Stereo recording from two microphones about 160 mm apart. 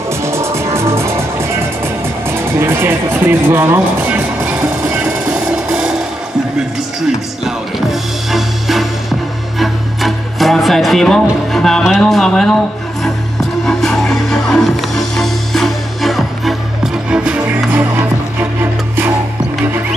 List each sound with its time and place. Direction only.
0.2 s music: 15° right (ahead or behind)
2.2 s music: 15° right (ahead or behind)
7.4 s music: centre (ahead or behind)
13.7 s music: centre (ahead or behind)